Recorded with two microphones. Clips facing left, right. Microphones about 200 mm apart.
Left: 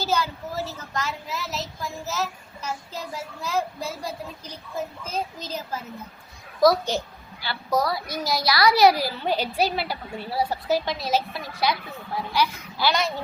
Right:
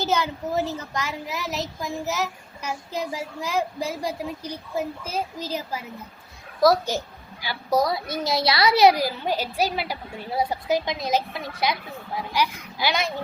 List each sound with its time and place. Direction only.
0.0 s a child's voice: 20° right (ahead or behind)
7.4 s a child's voice: 15° right (ahead or behind)